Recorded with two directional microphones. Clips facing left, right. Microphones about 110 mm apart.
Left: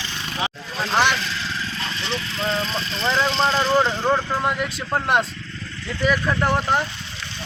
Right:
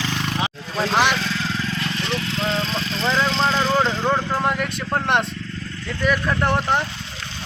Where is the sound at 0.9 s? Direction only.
Centre (ahead or behind).